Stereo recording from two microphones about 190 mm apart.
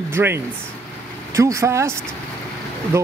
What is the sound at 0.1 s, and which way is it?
Speech, 10° right (ahead or behind).